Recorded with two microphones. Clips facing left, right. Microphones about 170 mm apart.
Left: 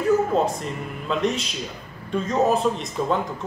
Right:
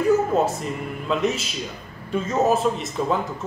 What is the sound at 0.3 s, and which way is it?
A man's voice, centre (ahead or behind).